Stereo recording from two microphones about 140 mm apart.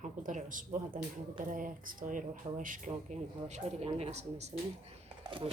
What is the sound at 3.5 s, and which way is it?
Speech, 50° right (ahead or behind).